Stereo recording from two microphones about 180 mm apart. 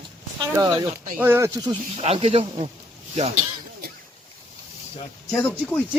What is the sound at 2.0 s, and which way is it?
Speech, 35° right (ahead or behind).